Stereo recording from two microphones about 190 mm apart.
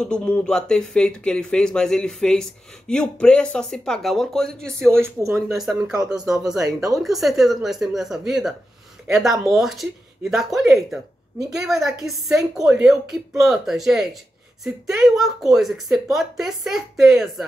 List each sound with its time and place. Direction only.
0.0 s speech: 5° left (ahead or behind)
4.9 s speech: 15° right (ahead or behind)
6.2 s speech: 5° right (ahead or behind)
6.5 s speech: 20° right (ahead or behind)
7.0 s speech: centre (ahead or behind)